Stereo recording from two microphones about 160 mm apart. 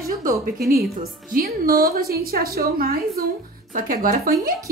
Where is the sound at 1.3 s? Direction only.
65° right (ahead or behind).